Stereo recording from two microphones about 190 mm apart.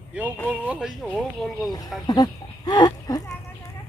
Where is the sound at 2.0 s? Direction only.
20° left (ahead or behind).